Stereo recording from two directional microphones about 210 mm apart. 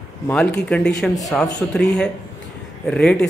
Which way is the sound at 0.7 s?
5° left (ahead or behind).